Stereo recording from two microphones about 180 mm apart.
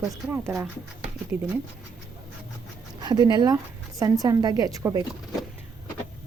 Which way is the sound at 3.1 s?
25° right (ahead or behind).